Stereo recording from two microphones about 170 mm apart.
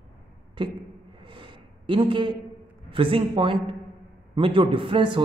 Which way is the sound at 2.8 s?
30° right (ahead or behind).